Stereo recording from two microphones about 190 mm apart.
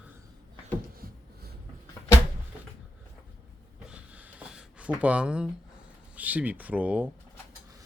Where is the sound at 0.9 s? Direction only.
50° right (ahead or behind).